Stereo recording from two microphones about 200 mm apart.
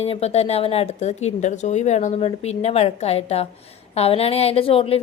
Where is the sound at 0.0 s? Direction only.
30° left (ahead or behind).